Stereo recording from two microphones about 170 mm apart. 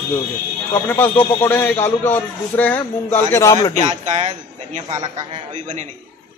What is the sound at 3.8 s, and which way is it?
A man's voice, 45° right (ahead or behind).